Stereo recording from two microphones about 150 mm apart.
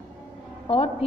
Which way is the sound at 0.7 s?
40° left (ahead or behind).